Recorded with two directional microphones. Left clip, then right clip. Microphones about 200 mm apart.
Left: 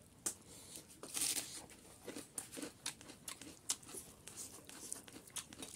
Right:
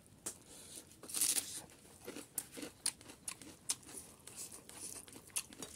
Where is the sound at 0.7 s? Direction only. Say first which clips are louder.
Right 2 dB; 10° right (ahead or behind).